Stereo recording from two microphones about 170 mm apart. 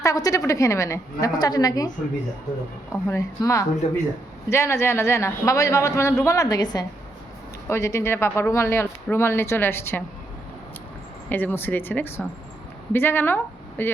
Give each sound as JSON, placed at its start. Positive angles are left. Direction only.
{"t": 0.0, "sound": "a woman's voice", "side_deg": 20}
{"t": 2.9, "sound": "a woman's voice", "side_deg": 20}
{"t": 11.3, "sound": "a man's voice", "side_deg": 10}